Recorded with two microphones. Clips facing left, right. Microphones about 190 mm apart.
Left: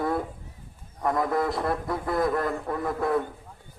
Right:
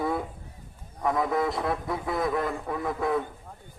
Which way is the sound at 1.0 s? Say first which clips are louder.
Left 1 dB; centre (ahead or behind).